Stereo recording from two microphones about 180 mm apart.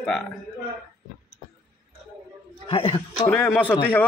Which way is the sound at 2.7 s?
30° left (ahead or behind).